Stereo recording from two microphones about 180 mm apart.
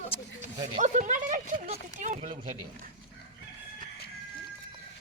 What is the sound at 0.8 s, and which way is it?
Speech, 45° right (ahead or behind).